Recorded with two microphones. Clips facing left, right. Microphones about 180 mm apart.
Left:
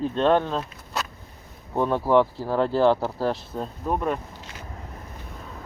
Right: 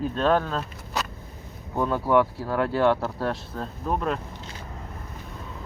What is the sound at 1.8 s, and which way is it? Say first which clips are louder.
Speech: left 2 dB; 25° left (ahead or behind).